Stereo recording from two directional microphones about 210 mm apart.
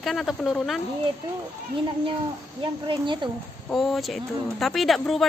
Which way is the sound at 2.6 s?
25° right (ahead or behind).